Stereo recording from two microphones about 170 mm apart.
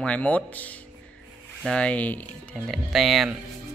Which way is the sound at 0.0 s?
5° left (ahead or behind).